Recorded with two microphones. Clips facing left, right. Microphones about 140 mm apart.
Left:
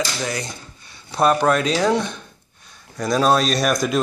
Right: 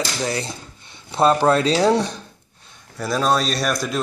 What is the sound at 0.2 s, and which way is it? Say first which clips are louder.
Speech: right 2 dB; 30° right (ahead or behind).